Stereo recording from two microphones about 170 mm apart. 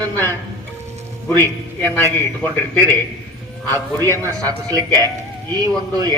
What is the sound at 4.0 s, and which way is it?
A man's voice, 20° right (ahead or behind).